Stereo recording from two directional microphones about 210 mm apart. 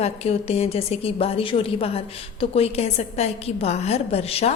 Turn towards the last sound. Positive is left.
turn(degrees=30)  # may be behind; listen again after turning